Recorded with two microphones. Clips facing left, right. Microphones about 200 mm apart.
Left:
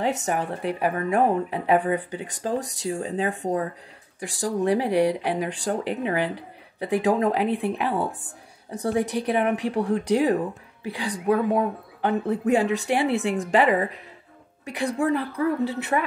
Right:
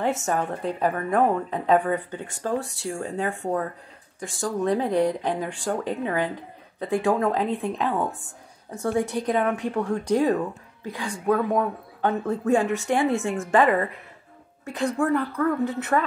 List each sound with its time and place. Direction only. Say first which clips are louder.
0.0 s a woman's voice: even; 15° left (ahead or behind)